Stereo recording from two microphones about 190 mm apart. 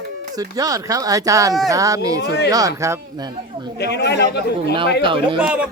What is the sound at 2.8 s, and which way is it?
Speech, 15° right (ahead or behind).